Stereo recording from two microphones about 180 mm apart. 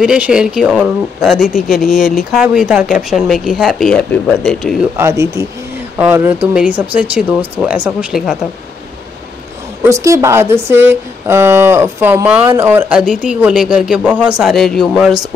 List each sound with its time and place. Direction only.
0.0 s speech: 5° right (ahead or behind)
4.9 s speech: 15° right (ahead or behind)
9.8 s speech: 15° right (ahead or behind); by 15.1 s centre (ahead or behind)